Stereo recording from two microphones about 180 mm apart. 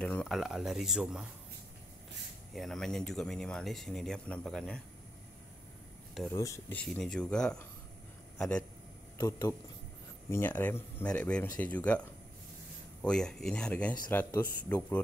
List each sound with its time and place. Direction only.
0.0 s speech: 5° left (ahead or behind)
2.5 s speech: centre (ahead or behind)
6.3 s speech: 15° left (ahead or behind)
9.2 s speech: 15° left (ahead or behind)